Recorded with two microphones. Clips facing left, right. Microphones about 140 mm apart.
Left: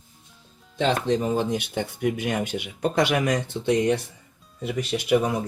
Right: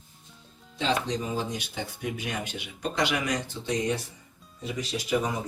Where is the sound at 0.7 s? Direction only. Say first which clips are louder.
Left 6 dB; 50° left (ahead or behind).